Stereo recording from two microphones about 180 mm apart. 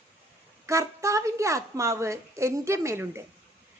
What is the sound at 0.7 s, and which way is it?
A woman's voice, 15° right (ahead or behind).